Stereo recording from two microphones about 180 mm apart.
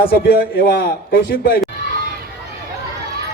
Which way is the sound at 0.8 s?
60° left (ahead or behind).